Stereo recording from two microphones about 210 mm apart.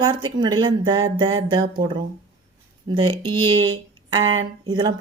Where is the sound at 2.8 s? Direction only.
20° right (ahead or behind).